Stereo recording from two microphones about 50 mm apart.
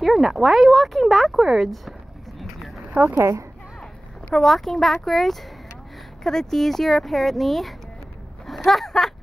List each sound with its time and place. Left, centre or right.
0.0 s speech: centre
3.2 s speech: right
4.4 s speech: centre